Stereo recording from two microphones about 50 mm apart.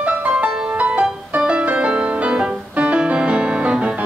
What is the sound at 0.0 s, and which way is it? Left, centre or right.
Music, right.